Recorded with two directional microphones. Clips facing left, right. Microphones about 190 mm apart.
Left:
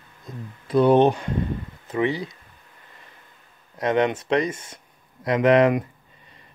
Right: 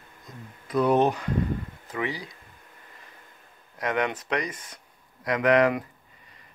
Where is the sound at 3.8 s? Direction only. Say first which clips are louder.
Left 6 dB; 25° left (ahead or behind).